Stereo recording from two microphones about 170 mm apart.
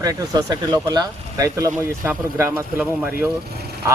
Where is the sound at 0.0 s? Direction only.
20° right (ahead or behind).